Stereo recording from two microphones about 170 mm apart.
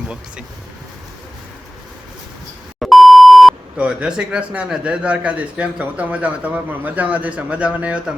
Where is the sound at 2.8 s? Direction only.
Centre (ahead or behind).